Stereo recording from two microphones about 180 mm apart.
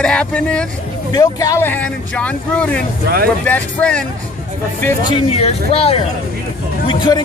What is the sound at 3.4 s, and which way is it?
Speech, 5° left (ahead or behind).